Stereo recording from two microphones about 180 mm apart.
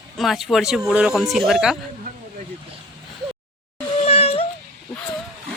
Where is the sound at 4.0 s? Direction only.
35° left (ahead or behind).